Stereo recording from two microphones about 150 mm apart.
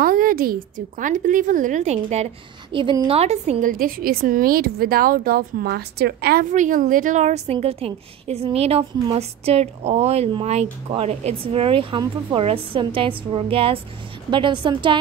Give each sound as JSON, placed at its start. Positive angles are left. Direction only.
{"t": 0.0, "sound": "a woman's voice", "side_deg": -75}
{"t": 2.7, "sound": "speech", "side_deg": -35}
{"t": 3.7, "sound": "speech", "side_deg": -75}
{"t": 6.5, "sound": "a woman's voice", "side_deg": -60}